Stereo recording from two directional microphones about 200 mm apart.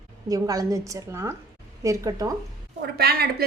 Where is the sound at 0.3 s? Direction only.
15° right (ahead or behind).